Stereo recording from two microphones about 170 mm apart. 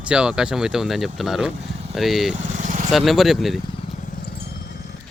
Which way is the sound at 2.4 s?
45° right (ahead or behind).